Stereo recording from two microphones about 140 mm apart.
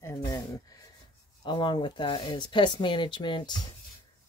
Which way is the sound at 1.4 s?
35° left (ahead or behind).